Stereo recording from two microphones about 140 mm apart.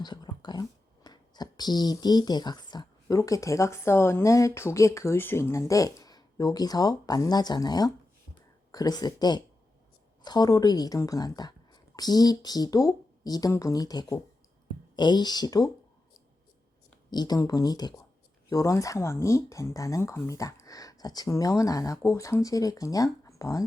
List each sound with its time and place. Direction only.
0.0 s speech: 30° left (ahead or behind)
17.1 s speech: 30° left (ahead or behind)